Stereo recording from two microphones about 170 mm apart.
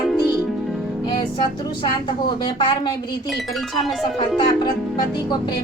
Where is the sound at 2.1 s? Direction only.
30° left (ahead or behind).